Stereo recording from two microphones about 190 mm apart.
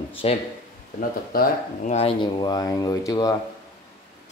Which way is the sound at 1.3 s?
50° left (ahead or behind).